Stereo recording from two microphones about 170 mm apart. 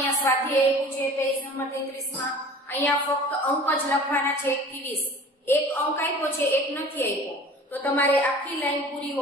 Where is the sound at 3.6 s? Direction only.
10° left (ahead or behind).